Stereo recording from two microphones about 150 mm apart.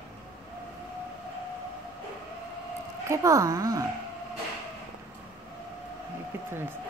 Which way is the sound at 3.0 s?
20° right (ahead or behind).